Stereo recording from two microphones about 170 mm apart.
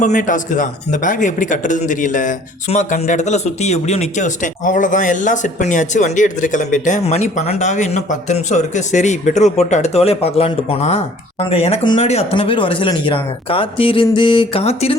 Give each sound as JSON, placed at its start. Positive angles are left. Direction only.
{"t": 0.0, "sound": "speech", "side_deg": 45}